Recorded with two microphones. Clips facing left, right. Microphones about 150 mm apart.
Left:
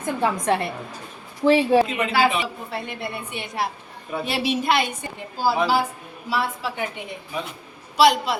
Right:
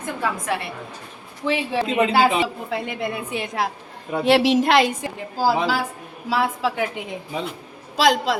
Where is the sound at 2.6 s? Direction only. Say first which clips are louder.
Right 4 dB; 90° right.